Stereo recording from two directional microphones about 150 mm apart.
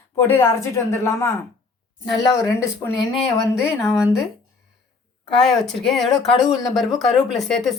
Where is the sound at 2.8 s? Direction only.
20° left (ahead or behind).